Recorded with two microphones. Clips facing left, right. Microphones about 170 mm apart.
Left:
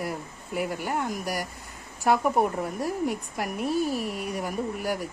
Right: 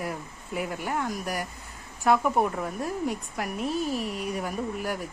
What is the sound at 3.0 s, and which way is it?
Speech, 5° left (ahead or behind).